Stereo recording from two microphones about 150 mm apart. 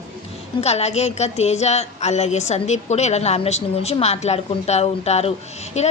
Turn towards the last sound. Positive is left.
turn(degrees=50)  # may be behind; listen again after turning